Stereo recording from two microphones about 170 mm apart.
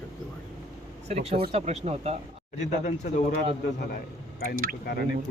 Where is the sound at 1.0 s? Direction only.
40° right (ahead or behind).